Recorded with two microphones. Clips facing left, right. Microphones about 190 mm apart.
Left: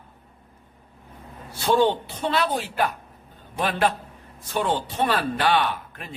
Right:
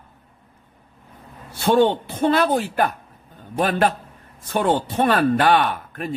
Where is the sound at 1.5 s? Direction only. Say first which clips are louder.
Right 3 dB; 55° right (ahead or behind).